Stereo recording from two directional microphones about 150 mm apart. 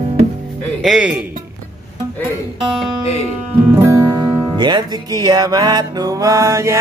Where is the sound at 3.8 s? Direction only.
20° right (ahead or behind).